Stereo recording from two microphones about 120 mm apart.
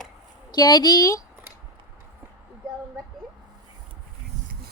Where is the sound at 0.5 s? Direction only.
35° left (ahead or behind).